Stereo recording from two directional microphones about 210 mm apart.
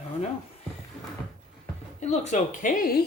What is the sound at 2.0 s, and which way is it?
Speech, 35° left (ahead or behind).